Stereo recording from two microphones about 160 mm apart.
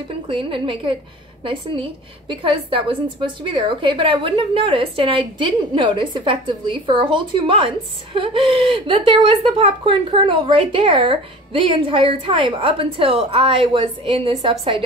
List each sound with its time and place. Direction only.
0.3 s a woman's voice: 35° right (ahead or behind)